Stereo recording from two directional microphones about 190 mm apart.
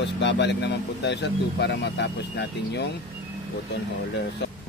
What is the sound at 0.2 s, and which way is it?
Speech, 65° left (ahead or behind).